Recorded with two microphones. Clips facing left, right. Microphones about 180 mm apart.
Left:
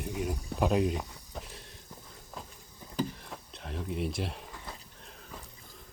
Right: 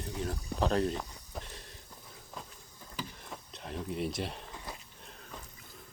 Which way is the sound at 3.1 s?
Centre (ahead or behind).